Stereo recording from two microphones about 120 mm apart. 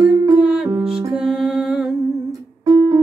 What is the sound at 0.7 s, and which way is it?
Music, 5° right (ahead or behind).